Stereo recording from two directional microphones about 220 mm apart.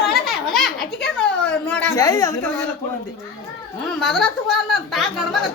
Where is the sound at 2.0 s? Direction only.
15° left (ahead or behind).